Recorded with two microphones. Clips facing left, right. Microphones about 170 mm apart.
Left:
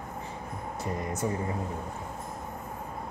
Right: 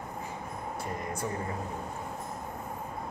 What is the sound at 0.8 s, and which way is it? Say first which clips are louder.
Speech: left 5 dB; 25° left (ahead or behind).